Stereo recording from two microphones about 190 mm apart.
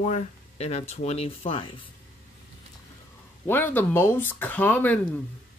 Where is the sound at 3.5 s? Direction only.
10° left (ahead or behind).